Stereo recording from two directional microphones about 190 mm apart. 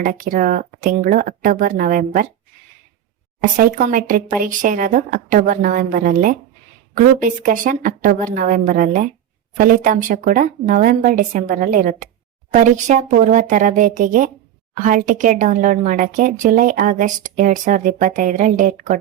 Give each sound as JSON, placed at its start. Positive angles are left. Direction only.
{"t": 0.0, "sound": "speech", "side_deg": -45}
{"t": 3.4, "sound": "a woman's voice", "side_deg": -40}